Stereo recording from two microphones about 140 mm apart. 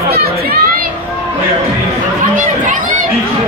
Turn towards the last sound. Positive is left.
turn(degrees=-70)  # may be behind; listen again after turning